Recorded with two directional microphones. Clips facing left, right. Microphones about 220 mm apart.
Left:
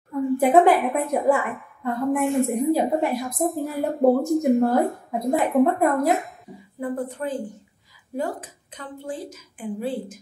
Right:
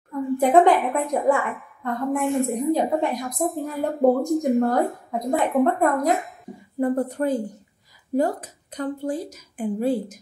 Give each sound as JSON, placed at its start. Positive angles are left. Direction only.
{"t": 0.4, "sound": "a woman's voice", "side_deg": 5}
{"t": 6.8, "sound": "a woman's voice", "side_deg": -40}